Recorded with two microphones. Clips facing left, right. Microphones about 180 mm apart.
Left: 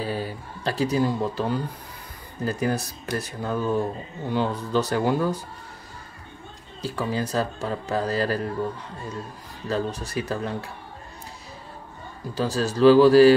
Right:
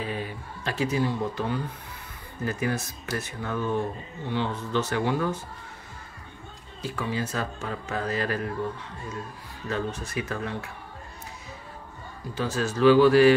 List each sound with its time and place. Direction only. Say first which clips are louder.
0.0 s speech: left 3 dB; 35° left (ahead or behind)
6.8 s speech: left 3 dB; 35° left (ahead or behind)
9.7 s speech: left 3 dB; 35° left (ahead or behind)
12.4 s speech: left 4 dB; 35° left (ahead or behind)